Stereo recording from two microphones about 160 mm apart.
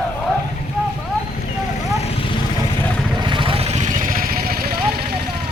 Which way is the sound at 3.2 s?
30° right (ahead or behind).